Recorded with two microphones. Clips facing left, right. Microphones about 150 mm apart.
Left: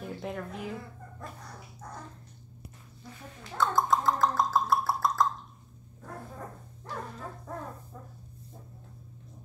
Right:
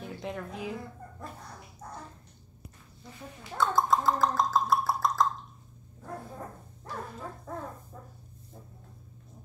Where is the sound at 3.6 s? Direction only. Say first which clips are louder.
Even; centre (ahead or behind).